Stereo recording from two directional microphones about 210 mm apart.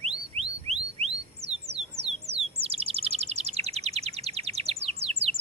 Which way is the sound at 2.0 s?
30° right (ahead or behind).